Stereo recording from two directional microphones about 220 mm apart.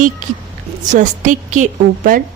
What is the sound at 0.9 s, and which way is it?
A woman's voice, 35° right (ahead or behind).